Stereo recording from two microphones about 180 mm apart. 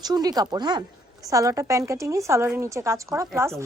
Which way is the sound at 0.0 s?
20° right (ahead or behind).